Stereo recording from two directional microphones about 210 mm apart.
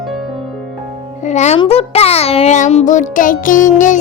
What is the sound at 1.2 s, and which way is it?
A child's voice, 35° left (ahead or behind).